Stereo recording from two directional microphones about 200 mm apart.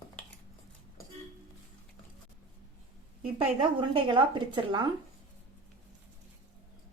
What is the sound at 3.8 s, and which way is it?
A woman's voice, 25° right (ahead or behind).